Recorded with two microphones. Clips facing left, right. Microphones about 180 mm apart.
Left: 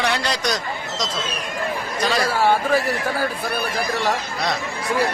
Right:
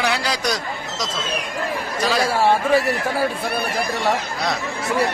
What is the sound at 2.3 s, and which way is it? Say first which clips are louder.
Speech: right 1 dB; 25° right (ahead or behind).